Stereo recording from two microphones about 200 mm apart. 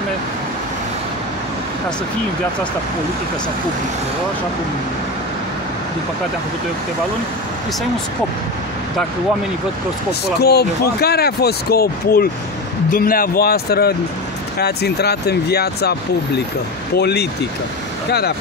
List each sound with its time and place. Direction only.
10.4 s speech: 55° left (ahead or behind)